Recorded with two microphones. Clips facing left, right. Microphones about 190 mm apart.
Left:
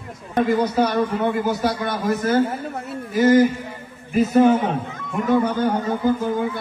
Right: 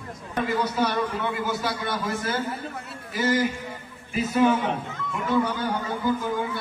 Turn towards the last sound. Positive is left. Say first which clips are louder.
# left 5 dB
turn(degrees=45)  # may be behind; listen again after turning